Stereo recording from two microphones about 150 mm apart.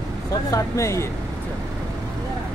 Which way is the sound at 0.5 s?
20° left (ahead or behind).